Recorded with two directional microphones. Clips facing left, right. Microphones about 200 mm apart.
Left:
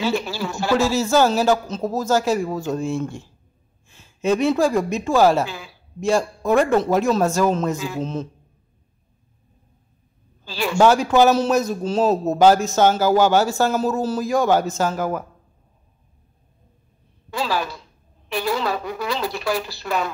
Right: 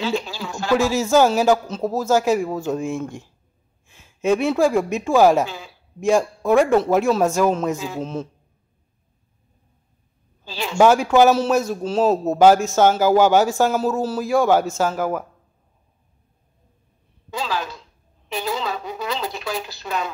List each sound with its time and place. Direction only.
0.1 s a man's voice: 15° right (ahead or behind)
3.8 s a sound: 5° right (ahead or behind)
4.6 s a man's voice: 10° right (ahead or behind)
10.4 s a man's voice: 20° right (ahead or behind)
13.7 s a man's voice: 5° right (ahead or behind)
17.4 s a woman's voice: 10° left (ahead or behind)
18.3 s a woman's voice: 20° right (ahead or behind)